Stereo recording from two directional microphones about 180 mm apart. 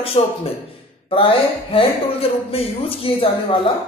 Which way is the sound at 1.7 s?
30° left (ahead or behind).